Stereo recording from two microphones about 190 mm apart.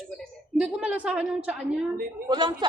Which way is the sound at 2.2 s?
25° right (ahead or behind).